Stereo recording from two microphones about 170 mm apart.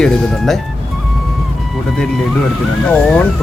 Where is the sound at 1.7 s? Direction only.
Centre (ahead or behind).